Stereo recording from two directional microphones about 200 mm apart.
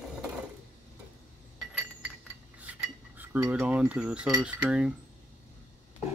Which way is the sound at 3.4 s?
5° right (ahead or behind).